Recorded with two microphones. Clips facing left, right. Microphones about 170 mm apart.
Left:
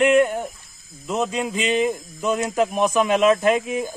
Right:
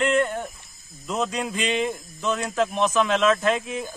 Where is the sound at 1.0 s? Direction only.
5° left (ahead or behind).